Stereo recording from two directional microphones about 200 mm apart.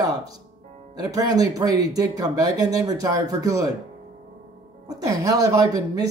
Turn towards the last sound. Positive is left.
turn(degrees=-20)  # may be behind; listen again after turning